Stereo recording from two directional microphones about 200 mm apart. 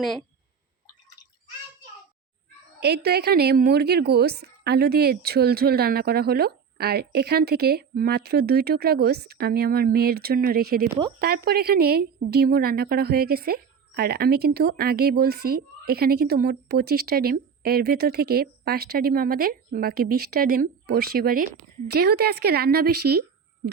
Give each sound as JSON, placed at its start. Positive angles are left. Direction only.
{"t": 0.0, "sound": "speech", "side_deg": 0}
{"t": 2.8, "sound": "a woman's voice", "side_deg": -55}